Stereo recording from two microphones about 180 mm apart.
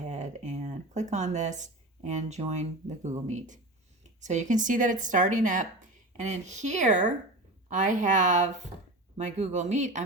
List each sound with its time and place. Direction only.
0.0 s a woman's voice: 40° right (ahead or behind)